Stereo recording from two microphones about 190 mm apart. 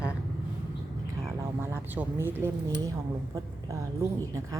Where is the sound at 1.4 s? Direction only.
10° right (ahead or behind).